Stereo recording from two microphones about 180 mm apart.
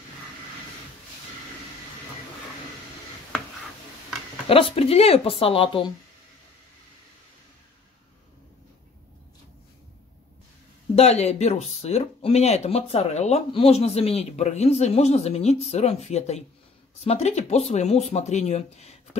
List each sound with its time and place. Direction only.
4.5 s speech: 30° left (ahead or behind)
11.0 s speech: 35° left (ahead or behind)